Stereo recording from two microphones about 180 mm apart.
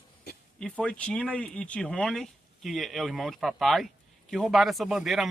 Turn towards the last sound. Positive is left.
turn(degrees=0)  # may be behind; listen again after turning